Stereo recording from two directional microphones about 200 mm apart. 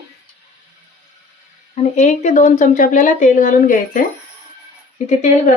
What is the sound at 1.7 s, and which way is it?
A woman's voice, 35° left (ahead or behind).